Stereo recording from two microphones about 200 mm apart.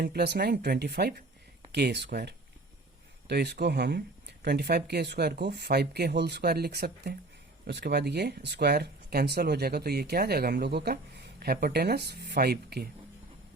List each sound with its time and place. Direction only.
0.0 s speech: 55° right (ahead or behind)